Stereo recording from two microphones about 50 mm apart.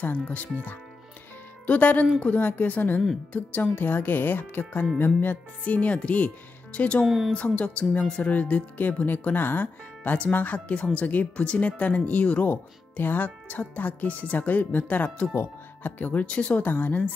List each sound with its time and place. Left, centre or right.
0.0 s speech: left
7.1 s a woman's voice: centre
7.3 s speech: left
16.3 s speech: left
16.6 s speech: left